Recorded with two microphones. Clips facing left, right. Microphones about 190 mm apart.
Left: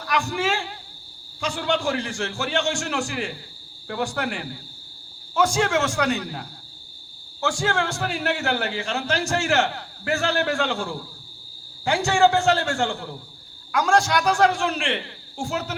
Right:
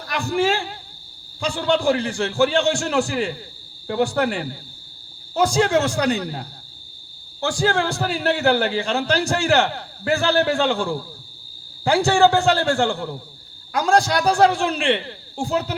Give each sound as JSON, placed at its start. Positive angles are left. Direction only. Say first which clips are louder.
{"t": 0.1, "sound": "a man's voice", "louder": "right 4 dB", "side_deg": -35}